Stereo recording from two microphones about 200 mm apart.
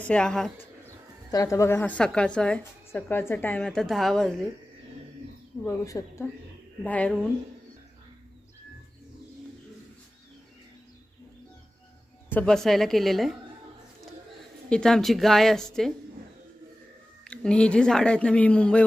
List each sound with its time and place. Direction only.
0.0 s speech: 5° left (ahead or behind)
1.3 s a woman's voice: 15° left (ahead or behind)
5.7 s a woman's voice: 15° left (ahead or behind)
12.3 s speech: 5° left (ahead or behind)
14.7 s speech: 5° left (ahead or behind)
17.2 s speech: 5° left (ahead or behind)